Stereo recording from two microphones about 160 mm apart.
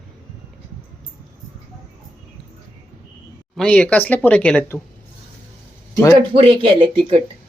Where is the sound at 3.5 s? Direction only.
5° left (ahead or behind).